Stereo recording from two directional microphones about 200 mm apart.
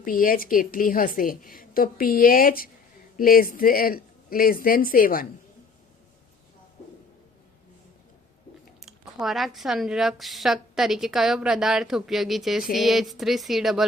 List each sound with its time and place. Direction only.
0.0 s a woman's voice: 45° left (ahead or behind)
8.8 s a woman's voice: centre (ahead or behind)